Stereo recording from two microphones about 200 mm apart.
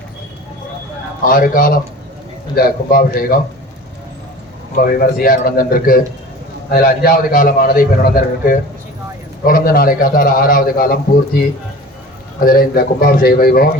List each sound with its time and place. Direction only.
1.3 s a man's voice: 45° left (ahead or behind)
4.8 s a man's voice: 45° left (ahead or behind)
12.5 s a man's voice: 50° left (ahead or behind)